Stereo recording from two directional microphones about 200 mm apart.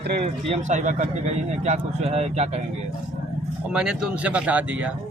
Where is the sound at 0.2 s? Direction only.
30° right (ahead or behind).